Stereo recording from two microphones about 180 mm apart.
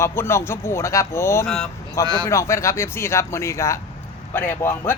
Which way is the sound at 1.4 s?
Centre (ahead or behind).